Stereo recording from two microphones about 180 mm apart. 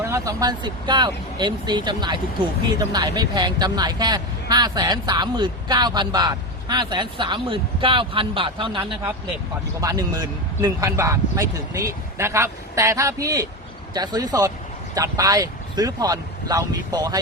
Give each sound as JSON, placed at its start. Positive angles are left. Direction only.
{"t": 0.0, "sound": "speech", "side_deg": -15}